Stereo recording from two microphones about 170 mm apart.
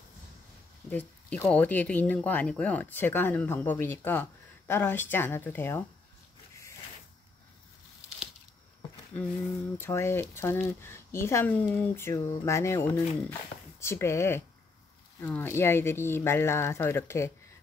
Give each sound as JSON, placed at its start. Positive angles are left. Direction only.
{"t": 0.9, "sound": "speech", "side_deg": 10}
{"t": 9.1, "sound": "speech", "side_deg": 10}